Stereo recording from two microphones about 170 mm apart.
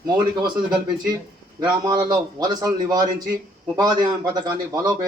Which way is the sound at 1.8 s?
25° right (ahead or behind).